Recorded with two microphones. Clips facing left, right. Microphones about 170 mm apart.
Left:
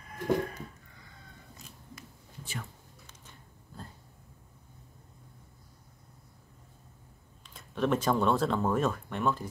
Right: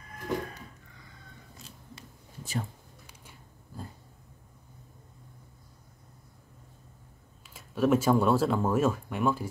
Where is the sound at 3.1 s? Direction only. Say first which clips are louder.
Right 1 dB; 10° right (ahead or behind).